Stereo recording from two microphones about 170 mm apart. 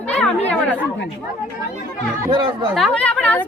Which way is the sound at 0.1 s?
5° left (ahead or behind).